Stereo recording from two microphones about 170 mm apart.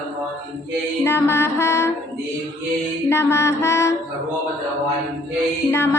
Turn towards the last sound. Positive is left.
turn(degrees=15)  # may be behind; listen again after turning